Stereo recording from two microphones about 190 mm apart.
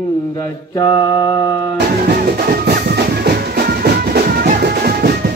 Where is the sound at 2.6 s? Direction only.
60° right (ahead or behind).